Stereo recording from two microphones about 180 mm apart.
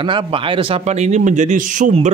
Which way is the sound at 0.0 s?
30° right (ahead or behind).